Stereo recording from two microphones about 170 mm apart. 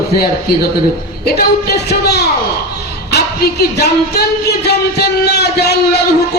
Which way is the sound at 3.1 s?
75° left (ahead or behind).